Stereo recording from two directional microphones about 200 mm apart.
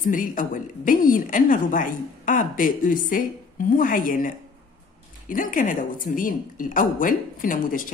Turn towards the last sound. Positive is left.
turn(degrees=45)  # may be behind; listen again after turning